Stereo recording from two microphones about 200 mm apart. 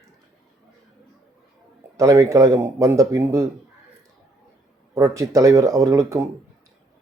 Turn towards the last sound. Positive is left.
turn(degrees=-15)  # may be behind; listen again after turning